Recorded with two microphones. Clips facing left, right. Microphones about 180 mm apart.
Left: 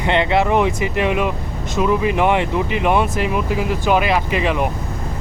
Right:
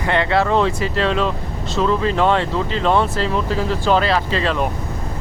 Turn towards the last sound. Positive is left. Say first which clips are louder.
# left 1 dB
turn(degrees=15)  # may be behind; listen again after turning